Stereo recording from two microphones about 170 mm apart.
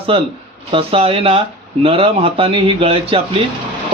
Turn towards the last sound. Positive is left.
turn(degrees=-35)  # may be behind; listen again after turning